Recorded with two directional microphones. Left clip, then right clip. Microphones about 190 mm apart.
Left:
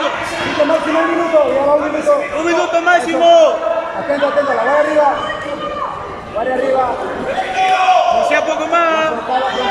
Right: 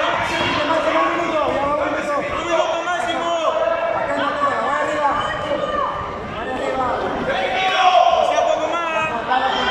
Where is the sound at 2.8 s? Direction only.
45° left (ahead or behind).